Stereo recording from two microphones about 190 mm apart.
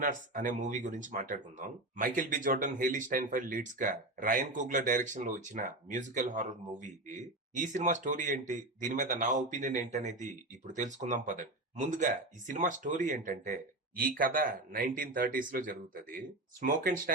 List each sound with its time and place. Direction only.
0.0 s speech: 45° right (ahead or behind)